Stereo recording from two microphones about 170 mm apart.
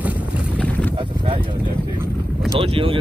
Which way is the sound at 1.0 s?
30° right (ahead or behind).